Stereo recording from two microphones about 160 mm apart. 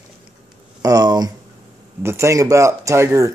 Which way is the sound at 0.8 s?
25° right (ahead or behind).